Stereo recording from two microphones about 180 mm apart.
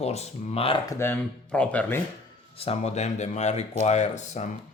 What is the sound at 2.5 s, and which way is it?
Speech, 35° left (ahead or behind).